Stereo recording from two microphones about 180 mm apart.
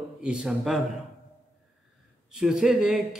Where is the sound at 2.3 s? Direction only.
5° right (ahead or behind).